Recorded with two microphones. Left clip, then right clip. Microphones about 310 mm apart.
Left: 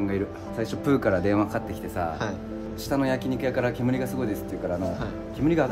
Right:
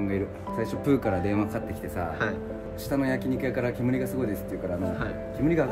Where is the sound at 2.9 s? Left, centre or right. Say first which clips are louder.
Left 2 dB; centre.